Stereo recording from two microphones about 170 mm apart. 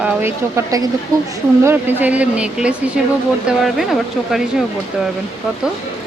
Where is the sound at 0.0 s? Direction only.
15° right (ahead or behind).